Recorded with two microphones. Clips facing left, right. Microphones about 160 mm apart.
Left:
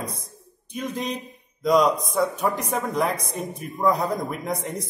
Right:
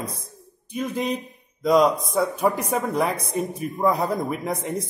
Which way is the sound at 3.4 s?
5° right (ahead or behind).